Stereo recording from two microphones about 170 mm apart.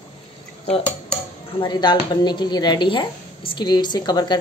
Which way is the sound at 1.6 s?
25° left (ahead or behind).